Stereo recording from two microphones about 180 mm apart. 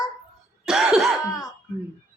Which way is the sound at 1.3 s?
20° left (ahead or behind).